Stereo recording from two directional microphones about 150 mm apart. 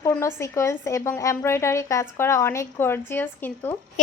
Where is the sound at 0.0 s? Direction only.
20° left (ahead or behind).